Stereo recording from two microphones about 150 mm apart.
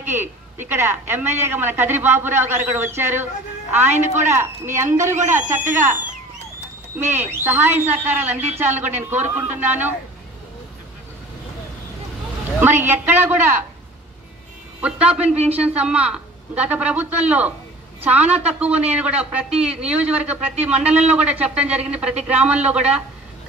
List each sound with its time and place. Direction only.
0.0 s speech: 15° right (ahead or behind)
7.1 s speech: 15° right (ahead or behind)
12.5 s speech: 15° right (ahead or behind)
14.8 s speech: 5° right (ahead or behind)